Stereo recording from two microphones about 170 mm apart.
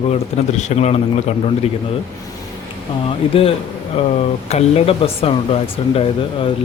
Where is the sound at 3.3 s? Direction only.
35° left (ahead or behind).